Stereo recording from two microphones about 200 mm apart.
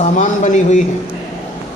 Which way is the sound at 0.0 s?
35° left (ahead or behind).